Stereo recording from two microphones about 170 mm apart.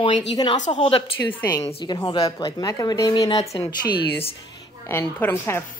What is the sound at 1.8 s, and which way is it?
Speech, 25° left (ahead or behind).